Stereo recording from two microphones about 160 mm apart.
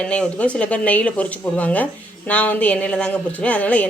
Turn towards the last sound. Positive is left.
turn(degrees=10)  # may be behind; listen again after turning